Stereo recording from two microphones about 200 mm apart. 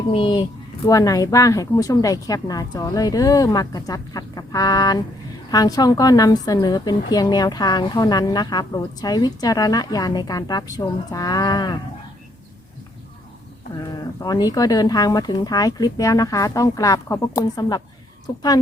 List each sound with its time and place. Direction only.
0.1 s a woman's voice: 25° left (ahead or behind)
13.7 s a woman's voice: 20° left (ahead or behind)